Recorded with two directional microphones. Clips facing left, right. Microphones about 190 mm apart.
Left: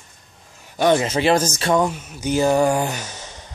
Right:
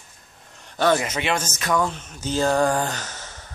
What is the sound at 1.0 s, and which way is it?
Speech, 30° left (ahead or behind).